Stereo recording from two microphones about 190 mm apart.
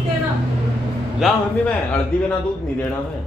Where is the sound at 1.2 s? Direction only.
5° left (ahead or behind).